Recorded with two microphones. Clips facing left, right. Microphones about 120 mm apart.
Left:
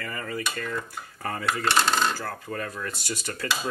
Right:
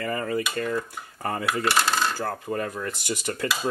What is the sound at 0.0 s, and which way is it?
Speech, 30° right (ahead or behind).